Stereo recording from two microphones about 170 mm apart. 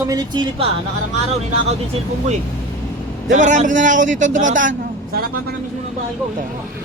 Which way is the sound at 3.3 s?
45° right (ahead or behind).